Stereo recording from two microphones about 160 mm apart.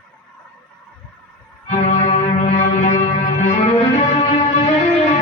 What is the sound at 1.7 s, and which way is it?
Music, 45° left (ahead or behind).